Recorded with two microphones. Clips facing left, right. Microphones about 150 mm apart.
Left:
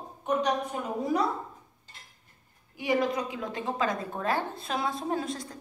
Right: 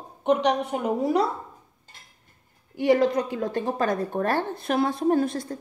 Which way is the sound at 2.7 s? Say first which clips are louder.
Right 7 dB; 65° right (ahead or behind).